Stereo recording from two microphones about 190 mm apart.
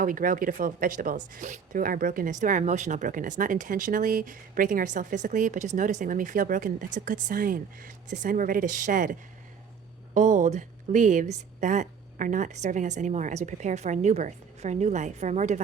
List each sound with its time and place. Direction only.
0.0 s speech: 45° right (ahead or behind)
10.2 s speech: 40° right (ahead or behind)